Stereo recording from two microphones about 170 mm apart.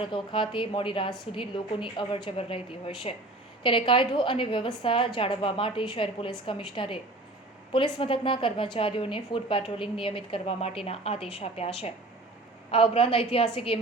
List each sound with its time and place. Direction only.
0.0 s a woman's voice: 30° left (ahead or behind)